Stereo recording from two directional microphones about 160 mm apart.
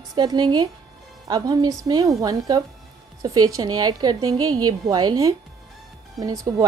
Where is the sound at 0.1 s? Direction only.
25° right (ahead or behind).